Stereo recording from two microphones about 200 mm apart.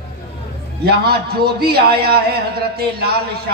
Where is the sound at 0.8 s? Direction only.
50° right (ahead or behind).